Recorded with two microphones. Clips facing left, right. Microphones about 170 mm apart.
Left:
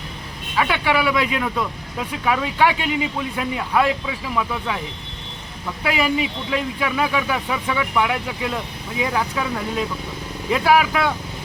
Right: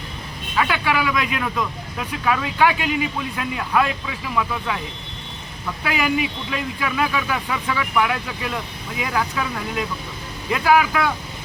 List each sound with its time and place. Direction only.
0.5 s speech: 25° left (ahead or behind)
5.8 s speech: 25° left (ahead or behind)